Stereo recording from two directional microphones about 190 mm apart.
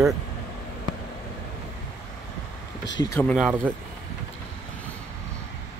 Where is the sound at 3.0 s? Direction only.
15° left (ahead or behind).